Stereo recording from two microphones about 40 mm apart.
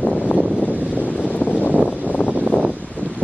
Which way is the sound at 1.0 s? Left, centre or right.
Left.